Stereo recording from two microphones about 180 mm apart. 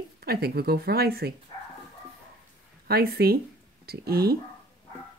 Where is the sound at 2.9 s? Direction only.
60° right (ahead or behind).